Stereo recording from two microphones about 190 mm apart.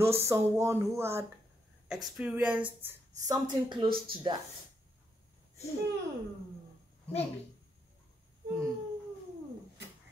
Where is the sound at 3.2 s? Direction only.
20° right (ahead or behind).